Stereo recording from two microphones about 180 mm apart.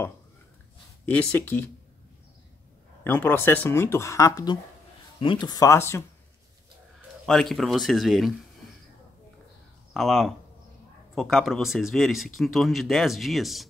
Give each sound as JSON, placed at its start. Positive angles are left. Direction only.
{"t": 1.0, "sound": "speech", "side_deg": 5}
{"t": 3.0, "sound": "speech", "side_deg": 10}
{"t": 7.2, "sound": "speech", "side_deg": 0}
{"t": 9.9, "sound": "speech", "side_deg": 0}